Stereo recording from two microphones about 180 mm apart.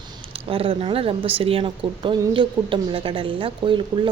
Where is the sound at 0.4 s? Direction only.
30° right (ahead or behind).